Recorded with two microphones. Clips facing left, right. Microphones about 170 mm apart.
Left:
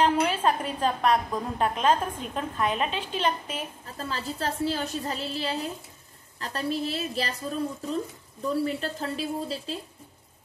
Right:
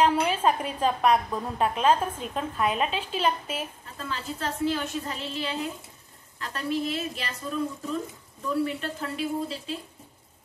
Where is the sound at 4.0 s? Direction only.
35° left (ahead or behind).